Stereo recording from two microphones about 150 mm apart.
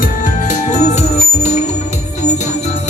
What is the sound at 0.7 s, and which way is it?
Music, 50° left (ahead or behind).